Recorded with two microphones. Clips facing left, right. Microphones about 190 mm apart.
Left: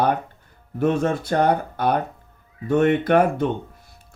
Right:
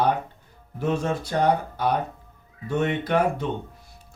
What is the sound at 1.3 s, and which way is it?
Speech, 60° left (ahead or behind).